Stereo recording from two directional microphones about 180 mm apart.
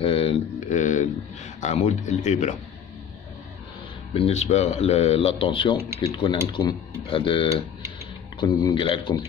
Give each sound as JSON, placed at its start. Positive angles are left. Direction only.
{"t": 0.0, "sound": "a sound", "side_deg": 30}
{"t": 1.6, "sound": "speech", "side_deg": 40}
{"t": 4.1, "sound": "speech", "side_deg": 35}